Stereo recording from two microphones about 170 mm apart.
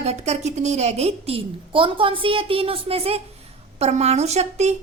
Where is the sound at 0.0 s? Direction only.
40° right (ahead or behind).